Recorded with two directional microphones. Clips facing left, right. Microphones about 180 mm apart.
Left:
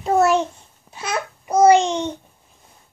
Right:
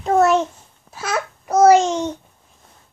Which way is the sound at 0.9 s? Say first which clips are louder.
Right 2 dB; centre (ahead or behind).